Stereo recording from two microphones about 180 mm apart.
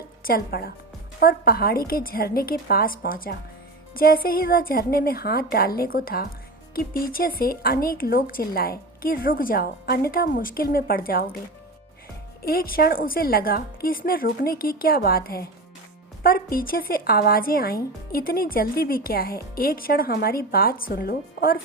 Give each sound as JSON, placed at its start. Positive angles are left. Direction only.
{"t": 0.3, "sound": "speech", "side_deg": 60}
{"t": 12.4, "sound": "speech", "side_deg": 55}